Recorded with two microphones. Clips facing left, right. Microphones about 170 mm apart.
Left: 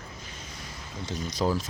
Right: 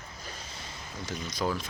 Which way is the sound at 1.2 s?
30° left (ahead or behind).